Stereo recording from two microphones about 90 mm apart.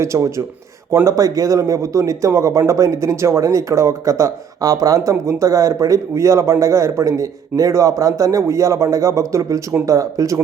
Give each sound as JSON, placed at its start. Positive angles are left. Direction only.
{"t": 0.0, "sound": "speech", "side_deg": -35}